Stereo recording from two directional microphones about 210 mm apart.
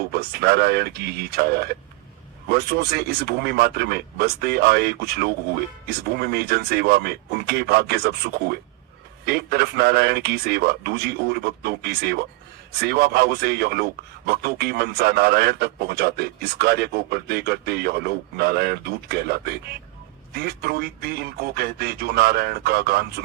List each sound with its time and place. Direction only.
0.1 s a man's voice: 50° right (ahead or behind)